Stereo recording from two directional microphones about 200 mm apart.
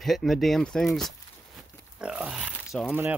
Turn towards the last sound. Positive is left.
turn(degrees=-10)  # may be behind; listen again after turning